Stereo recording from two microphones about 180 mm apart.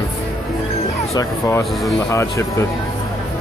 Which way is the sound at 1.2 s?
15° left (ahead or behind).